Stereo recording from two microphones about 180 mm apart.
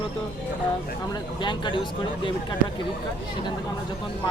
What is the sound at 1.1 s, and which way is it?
Speech, 25° left (ahead or behind).